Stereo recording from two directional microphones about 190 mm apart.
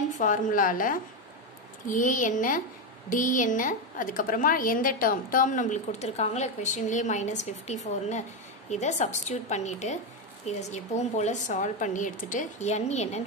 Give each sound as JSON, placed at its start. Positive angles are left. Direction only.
{"t": 0.1, "sound": "a woman's voice", "side_deg": 45}